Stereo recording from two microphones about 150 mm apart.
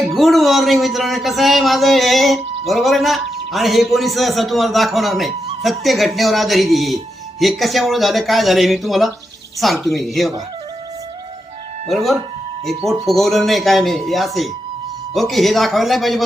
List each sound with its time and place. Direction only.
0.1 s a man's voice: centre (ahead or behind)
11.9 s a man's voice: centre (ahead or behind)